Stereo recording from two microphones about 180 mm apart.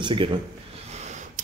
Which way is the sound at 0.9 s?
40° right (ahead or behind).